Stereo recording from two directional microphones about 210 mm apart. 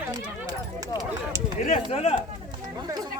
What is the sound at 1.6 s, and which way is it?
Speech, 30° left (ahead or behind).